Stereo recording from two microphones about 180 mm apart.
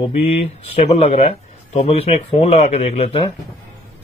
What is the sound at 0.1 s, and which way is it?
Speech, 35° left (ahead or behind).